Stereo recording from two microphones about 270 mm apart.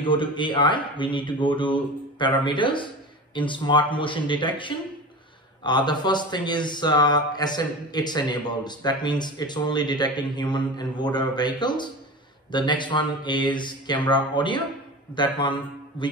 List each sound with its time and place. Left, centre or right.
0.0 s a man's voice: centre